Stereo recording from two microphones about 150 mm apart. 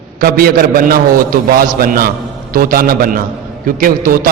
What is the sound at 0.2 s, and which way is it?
A man's voice, 90° right.